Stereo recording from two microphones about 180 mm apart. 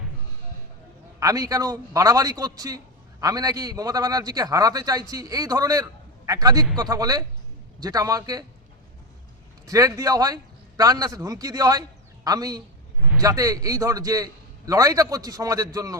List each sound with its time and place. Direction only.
1.2 s a man's voice: 20° right (ahead or behind)
9.6 s a man's voice: 20° right (ahead or behind)